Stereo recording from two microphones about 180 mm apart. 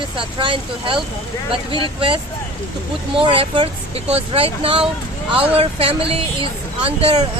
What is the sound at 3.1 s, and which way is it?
Speech, 30° right (ahead or behind).